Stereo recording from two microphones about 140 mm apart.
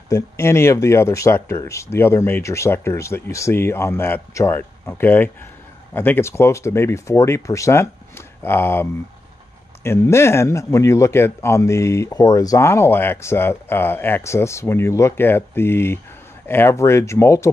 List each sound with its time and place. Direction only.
0.1 s a man's voice: 20° left (ahead or behind)
9.8 s a man's voice: 20° left (ahead or behind)